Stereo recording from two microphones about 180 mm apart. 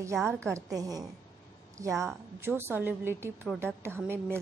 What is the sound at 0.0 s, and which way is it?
A woman's voice, 15° right (ahead or behind).